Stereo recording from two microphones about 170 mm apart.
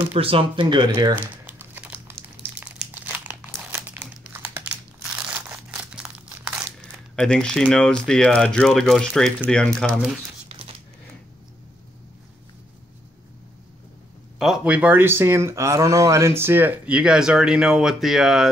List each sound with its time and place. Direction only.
0.1 s speech: 35° right (ahead or behind)
1.1 s crumpling: 10° right (ahead or behind)
7.2 s speech: 5° left (ahead or behind)
14.4 s speech: 5° right (ahead or behind)